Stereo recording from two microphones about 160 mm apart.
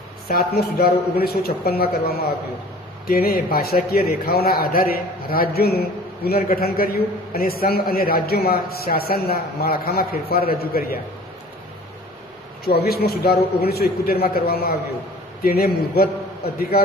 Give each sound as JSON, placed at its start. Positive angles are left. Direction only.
{"t": 0.3, "sound": "a man's voice", "side_deg": 75}
{"t": 12.6, "sound": "a man's voice", "side_deg": 80}